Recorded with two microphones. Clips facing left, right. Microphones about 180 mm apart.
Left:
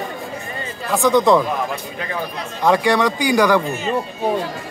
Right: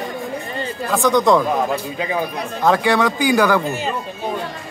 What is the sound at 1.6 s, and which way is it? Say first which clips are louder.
Speech: right 4 dB; 15° right (ahead or behind).